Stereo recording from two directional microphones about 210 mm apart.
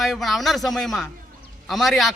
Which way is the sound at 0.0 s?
Centre (ahead or behind).